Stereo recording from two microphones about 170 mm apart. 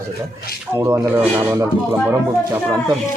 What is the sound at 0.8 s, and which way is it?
Speech, 15° right (ahead or behind).